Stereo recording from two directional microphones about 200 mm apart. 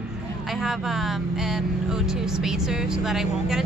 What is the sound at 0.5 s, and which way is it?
Speech, centre (ahead or behind).